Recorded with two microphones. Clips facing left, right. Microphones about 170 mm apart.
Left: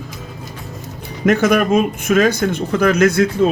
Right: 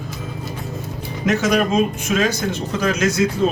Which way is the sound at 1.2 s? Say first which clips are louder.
Left 4 dB; 55° left (ahead or behind).